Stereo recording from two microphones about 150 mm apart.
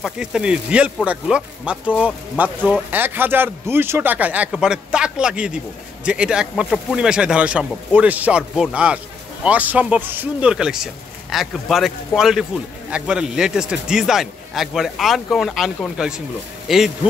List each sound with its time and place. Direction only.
0.0 s a man's voice: 5° right (ahead or behind)